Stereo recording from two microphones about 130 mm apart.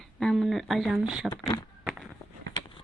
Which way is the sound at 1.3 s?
30° left (ahead or behind).